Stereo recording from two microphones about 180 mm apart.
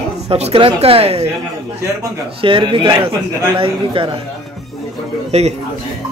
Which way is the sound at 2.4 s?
30° right (ahead or behind).